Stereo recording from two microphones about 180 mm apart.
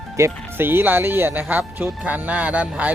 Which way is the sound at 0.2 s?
10° right (ahead or behind).